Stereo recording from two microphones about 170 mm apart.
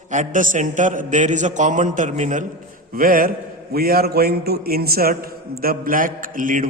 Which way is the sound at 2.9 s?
55° right (ahead or behind).